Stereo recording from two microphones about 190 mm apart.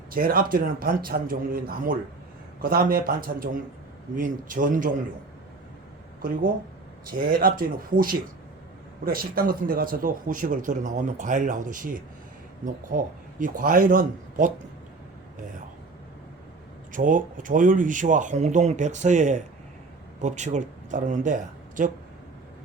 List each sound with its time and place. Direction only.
0.1 s speech: 50° right (ahead or behind)
6.2 s speech: 45° right (ahead or behind)
13.4 s speech: 45° right (ahead or behind)
16.9 s speech: 45° right (ahead or behind)